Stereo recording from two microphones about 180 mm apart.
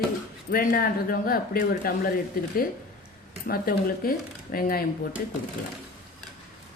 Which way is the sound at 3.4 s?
55° left (ahead or behind).